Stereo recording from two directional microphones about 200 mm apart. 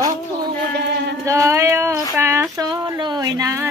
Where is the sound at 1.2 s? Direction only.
15° right (ahead or behind).